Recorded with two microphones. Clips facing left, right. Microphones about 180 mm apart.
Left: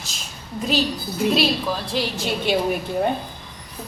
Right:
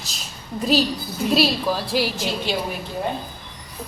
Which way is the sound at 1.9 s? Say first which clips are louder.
Right 2 dB; 5° right (ahead or behind).